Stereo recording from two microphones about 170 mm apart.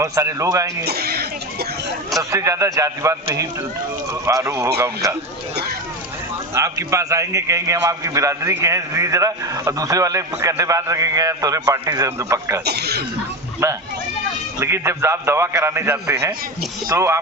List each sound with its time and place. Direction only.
0.0 s a man's voice: 20° right (ahead or behind)
0.9 s a sound: 65° right (ahead or behind)
2.3 s a man's voice: 20° right (ahead or behind)
6.5 s a man's voice: 20° right (ahead or behind)
12.6 s speech: 70° right (ahead or behind)
13.6 s a man's voice: 15° right (ahead or behind)